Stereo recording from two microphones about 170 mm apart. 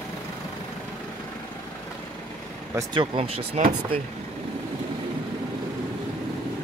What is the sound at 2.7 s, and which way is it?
Speech, 30° right (ahead or behind).